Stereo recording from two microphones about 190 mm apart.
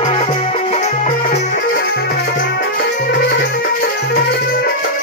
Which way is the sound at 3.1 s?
60° left (ahead or behind).